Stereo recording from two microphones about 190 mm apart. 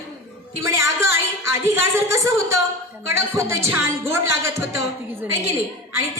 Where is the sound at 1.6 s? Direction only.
15° right (ahead or behind).